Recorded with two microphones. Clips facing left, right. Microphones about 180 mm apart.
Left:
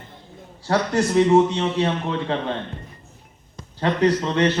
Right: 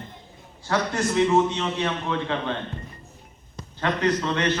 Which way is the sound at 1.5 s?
35° left (ahead or behind).